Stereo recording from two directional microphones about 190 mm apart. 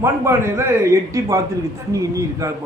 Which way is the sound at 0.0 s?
15° right (ahead or behind).